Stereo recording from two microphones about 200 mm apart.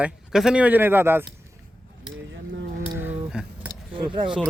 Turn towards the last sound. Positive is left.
turn(degrees=-25)  # may be behind; listen again after turning